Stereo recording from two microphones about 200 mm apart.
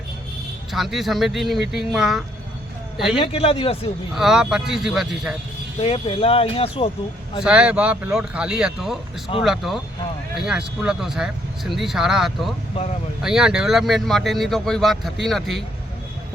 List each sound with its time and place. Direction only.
0.7 s speech: centre (ahead or behind)
3.2 s speech: 30° left (ahead or behind)
4.1 s speech: centre (ahead or behind)
5.8 s speech: 30° left (ahead or behind)
7.4 s speech: 5° right (ahead or behind)